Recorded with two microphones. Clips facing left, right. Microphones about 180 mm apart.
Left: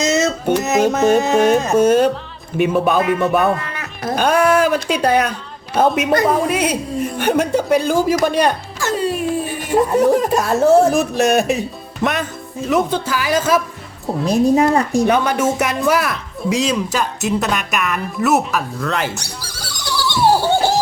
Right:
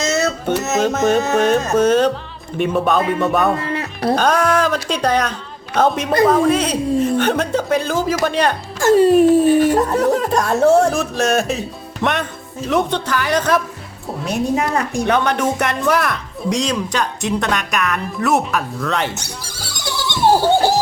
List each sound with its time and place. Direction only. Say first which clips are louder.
0.0 s a sound: left 2 dB; 15° left (ahead or behind)
0.6 s music: left 2 dB; 15° left (ahead or behind)
0.9 s speech: left 1 dB; 10° left (ahead or behind)
3.6 s music: right 6 dB; 30° right (ahead or behind)
4.1 s speech: left 2 dB; 10° left (ahead or behind)
8.8 s speech: right 10 dB; 50° right (ahead or behind)
9.7 s speech: left 2 dB; 10° left (ahead or behind)
10.9 s speech: left 3 dB; 15° left (ahead or behind)
12.6 s speech: left 1 dB; 5° left (ahead or behind)
14.3 s a woman's voice: left 6 dB; 30° left (ahead or behind)
15.0 s speech: left 1 dB; 5° left (ahead or behind)
19.1 s neigh: even; 25° right (ahead or behind)